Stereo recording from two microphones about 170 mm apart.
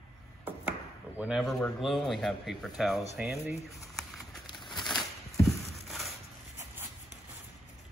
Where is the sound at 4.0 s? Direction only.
Centre (ahead or behind).